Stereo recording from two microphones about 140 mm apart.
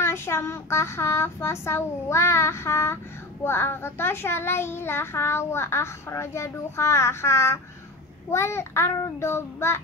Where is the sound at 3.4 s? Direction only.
15° left (ahead or behind).